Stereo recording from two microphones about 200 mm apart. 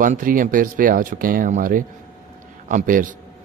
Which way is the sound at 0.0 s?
45° right (ahead or behind).